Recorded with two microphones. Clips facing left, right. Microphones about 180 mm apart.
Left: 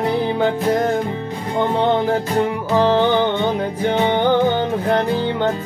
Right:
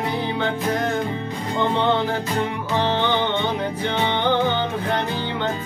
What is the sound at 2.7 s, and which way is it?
Music, 40° left (ahead or behind).